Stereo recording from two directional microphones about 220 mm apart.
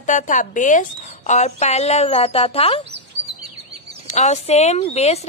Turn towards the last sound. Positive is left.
turn(degrees=30)  # may be behind; listen again after turning